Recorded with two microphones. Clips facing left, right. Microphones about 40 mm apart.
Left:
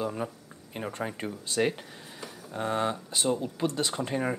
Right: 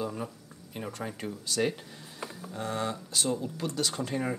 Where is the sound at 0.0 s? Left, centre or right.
Left.